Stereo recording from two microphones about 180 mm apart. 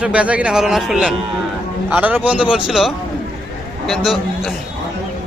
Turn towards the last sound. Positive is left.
turn(degrees=0)  # may be behind; listen again after turning